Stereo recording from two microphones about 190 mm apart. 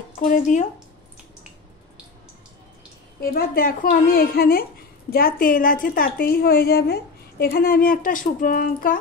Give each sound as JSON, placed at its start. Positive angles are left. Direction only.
{"t": 0.2, "sound": "a woman's voice", "side_deg": 45}
{"t": 3.2, "sound": "a woman's voice", "side_deg": 50}